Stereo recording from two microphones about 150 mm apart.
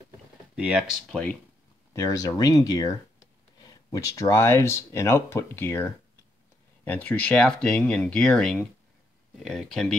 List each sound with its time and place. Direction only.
0.6 s speech: 5° right (ahead or behind)
2.0 s speech: 25° left (ahead or behind); by 9.9 s 5° left (ahead or behind)